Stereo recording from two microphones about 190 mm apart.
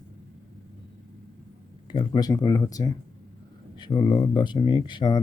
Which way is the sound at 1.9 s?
25° left (ahead or behind).